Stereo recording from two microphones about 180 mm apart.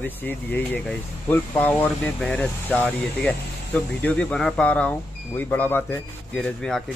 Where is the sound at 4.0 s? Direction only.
5° left (ahead or behind).